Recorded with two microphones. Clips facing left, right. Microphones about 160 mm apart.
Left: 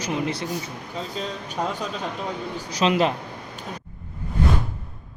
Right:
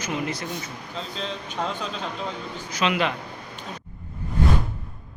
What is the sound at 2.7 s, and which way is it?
Speech, 35° left (ahead or behind).